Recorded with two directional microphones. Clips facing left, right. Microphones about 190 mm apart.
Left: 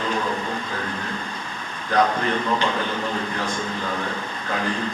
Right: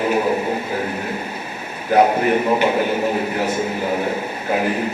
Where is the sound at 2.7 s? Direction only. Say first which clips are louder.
Right 7 dB; 10° right (ahead or behind).